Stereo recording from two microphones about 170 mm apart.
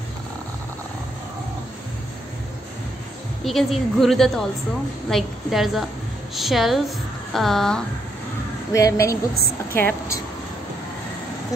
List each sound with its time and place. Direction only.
3.4 s a woman's voice: centre (ahead or behind)
8.7 s a woman's voice: 15° left (ahead or behind)